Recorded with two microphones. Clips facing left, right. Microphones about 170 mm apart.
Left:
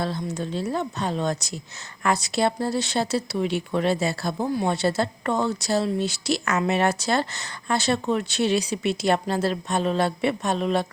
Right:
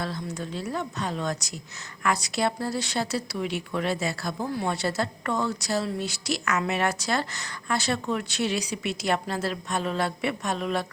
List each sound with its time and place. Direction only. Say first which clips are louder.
0.0 s speech: left 4 dB; 30° left (ahead or behind)